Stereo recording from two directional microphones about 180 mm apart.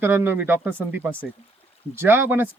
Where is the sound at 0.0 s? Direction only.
10° right (ahead or behind).